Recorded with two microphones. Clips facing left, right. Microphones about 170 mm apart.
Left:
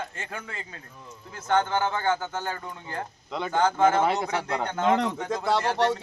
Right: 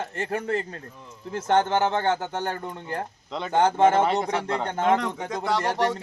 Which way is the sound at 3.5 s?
30° right (ahead or behind).